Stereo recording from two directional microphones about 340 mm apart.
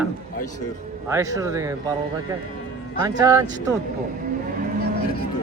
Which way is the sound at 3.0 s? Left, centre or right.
Centre.